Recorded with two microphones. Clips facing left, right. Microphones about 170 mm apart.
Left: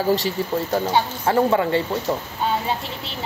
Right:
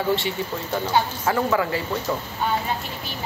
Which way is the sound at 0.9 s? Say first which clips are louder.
Left 2 dB; 30° left (ahead or behind).